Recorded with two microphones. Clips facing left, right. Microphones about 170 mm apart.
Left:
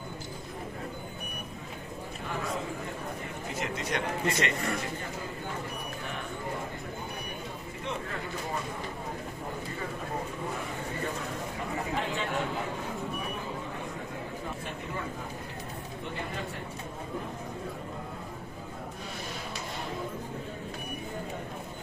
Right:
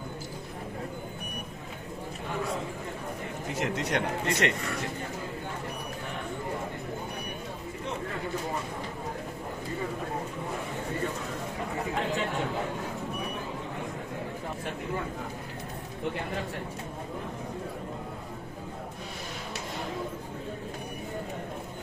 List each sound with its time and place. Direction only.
3.5 s a man's voice: 70° right (ahead or behind)